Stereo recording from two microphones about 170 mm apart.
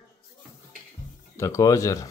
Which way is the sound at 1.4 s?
20° left (ahead or behind).